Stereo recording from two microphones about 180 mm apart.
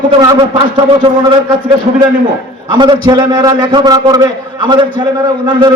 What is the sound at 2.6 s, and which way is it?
A man's voice, 25° right (ahead or behind).